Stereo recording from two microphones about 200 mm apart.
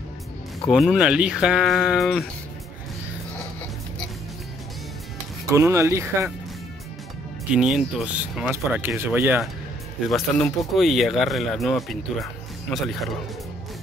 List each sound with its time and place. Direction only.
0.7 s speech: centre (ahead or behind)
5.5 s speech: 15° right (ahead or behind)
7.5 s speech: 5° right (ahead or behind)